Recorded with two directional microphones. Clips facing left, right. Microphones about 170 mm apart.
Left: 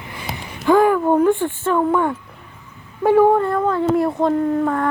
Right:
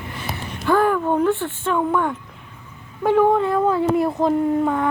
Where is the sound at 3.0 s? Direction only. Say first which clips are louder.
Left 3 dB; 10° left (ahead or behind).